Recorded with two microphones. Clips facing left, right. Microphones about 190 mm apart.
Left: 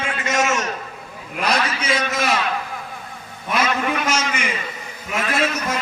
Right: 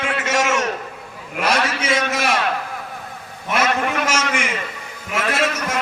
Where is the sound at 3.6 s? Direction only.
65° right (ahead or behind).